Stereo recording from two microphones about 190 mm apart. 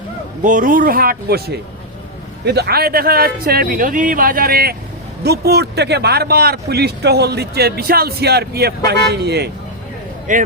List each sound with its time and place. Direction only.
0.4 s speech: 45° right (ahead or behind)
10.3 s speech: 45° right (ahead or behind)